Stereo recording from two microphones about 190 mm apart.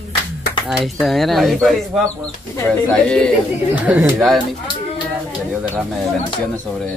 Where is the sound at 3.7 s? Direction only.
10° right (ahead or behind).